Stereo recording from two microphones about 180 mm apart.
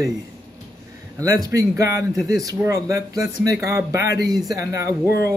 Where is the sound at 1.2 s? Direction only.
20° right (ahead or behind).